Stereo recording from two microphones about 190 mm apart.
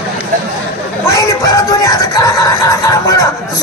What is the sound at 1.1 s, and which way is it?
Speech, 15° left (ahead or behind).